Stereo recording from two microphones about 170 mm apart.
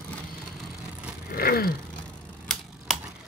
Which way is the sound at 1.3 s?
60° left (ahead or behind).